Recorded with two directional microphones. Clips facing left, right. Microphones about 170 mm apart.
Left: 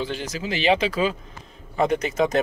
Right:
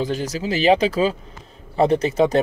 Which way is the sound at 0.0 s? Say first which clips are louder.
Right 5 dB; 40° right (ahead or behind).